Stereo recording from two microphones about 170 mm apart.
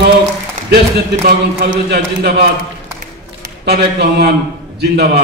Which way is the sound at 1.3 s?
60° right (ahead or behind).